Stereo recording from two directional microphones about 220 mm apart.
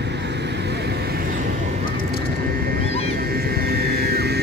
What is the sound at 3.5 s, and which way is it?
Vehicle, 45° right (ahead or behind).